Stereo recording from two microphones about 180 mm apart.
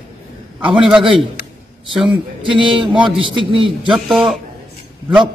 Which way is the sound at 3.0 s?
30° right (ahead or behind).